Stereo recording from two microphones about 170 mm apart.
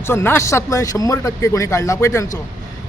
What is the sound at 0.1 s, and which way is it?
A man's voice, 15° left (ahead or behind).